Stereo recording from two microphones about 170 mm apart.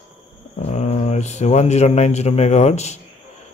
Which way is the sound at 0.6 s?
40° left (ahead or behind).